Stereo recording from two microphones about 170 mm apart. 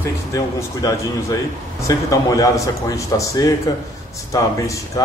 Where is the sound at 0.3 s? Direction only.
20° left (ahead or behind).